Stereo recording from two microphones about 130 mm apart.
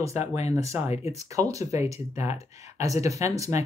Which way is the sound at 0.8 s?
55° left (ahead or behind).